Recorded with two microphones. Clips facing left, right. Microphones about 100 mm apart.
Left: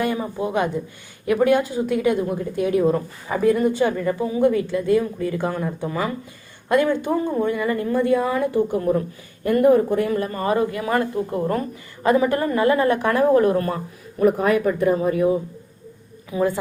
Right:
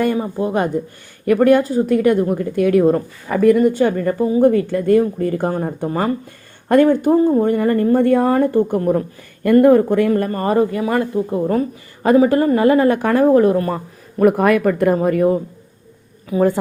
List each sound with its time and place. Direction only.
0.2 s a woman's voice: 40° right (ahead or behind)
9.4 s speech: 65° right (ahead or behind); by 10.9 s 35° right (ahead or behind)
11.2 s speech: 20° right (ahead or behind)
12.0 s a woman's voice: 35° right (ahead or behind)
14.2 s a woman's voice: 65° right (ahead or behind)
16.3 s speech: 25° right (ahead or behind)